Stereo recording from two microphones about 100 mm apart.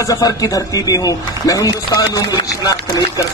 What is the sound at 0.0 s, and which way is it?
A man's voice, 35° left (ahead or behind).